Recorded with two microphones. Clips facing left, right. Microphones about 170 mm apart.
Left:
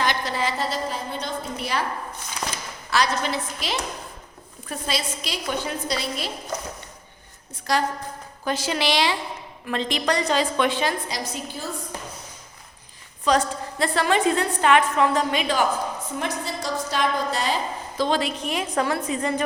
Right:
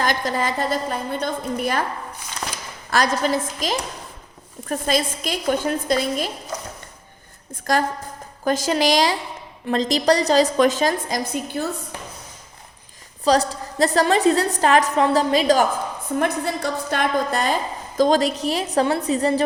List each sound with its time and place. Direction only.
0.0 s a woman's voice: 45° right (ahead or behind)
2.9 s a woman's voice: 45° right (ahead or behind)
7.7 s a woman's voice: 45° right (ahead or behind)
11.6 s speech: 60° right (ahead or behind)
13.2 s a woman's voice: 35° right (ahead or behind)
16.1 s a woman's voice: 55° right (ahead or behind); by 19.4 s 35° right (ahead or behind)